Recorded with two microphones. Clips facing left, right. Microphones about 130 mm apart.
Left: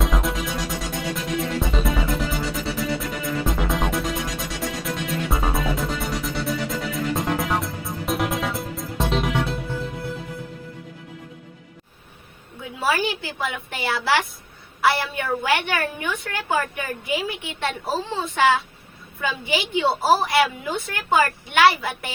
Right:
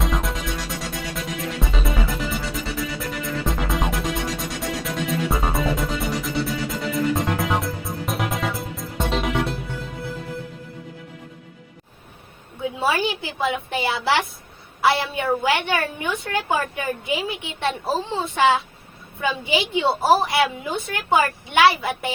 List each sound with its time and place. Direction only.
0.0 s music: centre (ahead or behind)
1.6 s music: centre (ahead or behind)
12.6 s a sound: 20° right (ahead or behind)
14.8 s a woman's voice: 20° right (ahead or behind)